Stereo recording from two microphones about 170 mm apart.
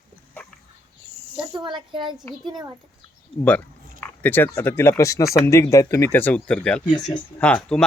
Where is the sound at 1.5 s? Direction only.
25° right (ahead or behind).